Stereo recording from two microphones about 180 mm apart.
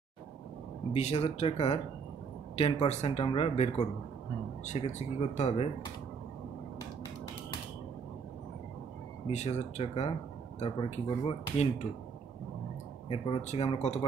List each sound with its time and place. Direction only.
0.9 s speech: 35° left (ahead or behind)
9.3 s speech: 40° left (ahead or behind)
13.1 s speech: 35° left (ahead or behind)